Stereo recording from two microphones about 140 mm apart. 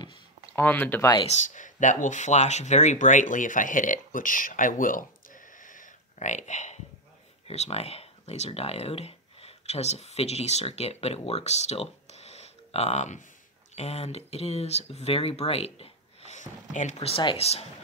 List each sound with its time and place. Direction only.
0.0 s a sound: 30° left (ahead or behind)
0.6 s speech: 15° left (ahead or behind)
1.3 s speech: 60° left (ahead or behind); by 15.9 s 45° left (ahead or behind)
16.3 s speech: 60° left (ahead or behind)
17.1 s speech: 40° left (ahead or behind)